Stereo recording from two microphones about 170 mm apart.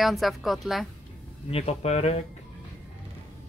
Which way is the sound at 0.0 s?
Centre (ahead or behind).